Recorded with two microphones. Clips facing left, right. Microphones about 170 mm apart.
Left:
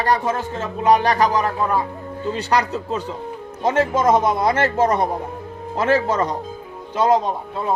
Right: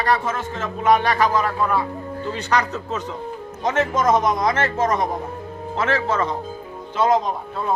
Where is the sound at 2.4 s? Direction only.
35° left (ahead or behind).